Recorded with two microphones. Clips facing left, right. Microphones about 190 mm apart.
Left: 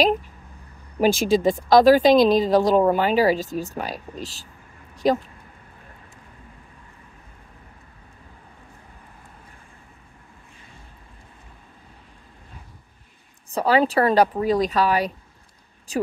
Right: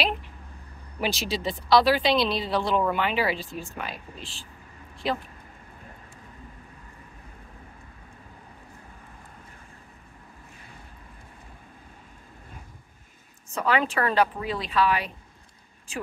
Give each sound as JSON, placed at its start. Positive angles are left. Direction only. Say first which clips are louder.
{"t": 1.0, "sound": "speech", "louder": "left 10 dB", "side_deg": 50}
{"t": 13.5, "sound": "speech", "louder": "left 6 dB", "side_deg": 35}